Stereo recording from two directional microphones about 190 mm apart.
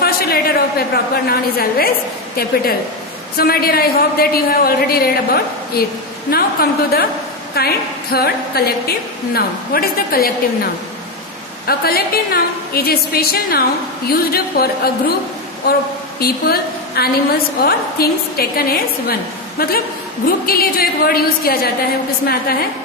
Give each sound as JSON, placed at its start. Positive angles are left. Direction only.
{"t": 0.0, "sound": "a woman's voice", "side_deg": 55}
{"t": 16.2, "sound": "a woman's voice", "side_deg": 55}
{"t": 20.2, "sound": "a woman's voice", "side_deg": 50}